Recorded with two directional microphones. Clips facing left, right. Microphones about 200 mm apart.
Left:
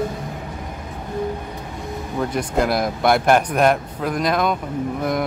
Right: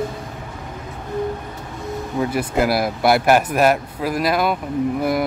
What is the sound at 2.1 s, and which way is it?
Speech, 5° right (ahead or behind).